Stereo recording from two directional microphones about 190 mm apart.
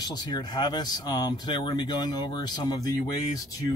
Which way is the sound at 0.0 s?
20° left (ahead or behind).